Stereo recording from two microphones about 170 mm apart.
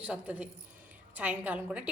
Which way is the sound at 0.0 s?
10° right (ahead or behind).